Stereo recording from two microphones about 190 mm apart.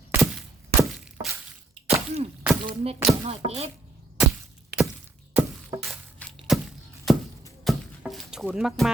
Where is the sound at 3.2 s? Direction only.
35° right (ahead or behind).